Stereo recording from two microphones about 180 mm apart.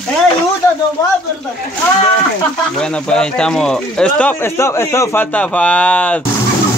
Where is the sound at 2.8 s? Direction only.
5° left (ahead or behind).